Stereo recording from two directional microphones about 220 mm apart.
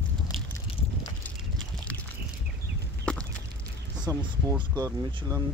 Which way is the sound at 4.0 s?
15° right (ahead or behind).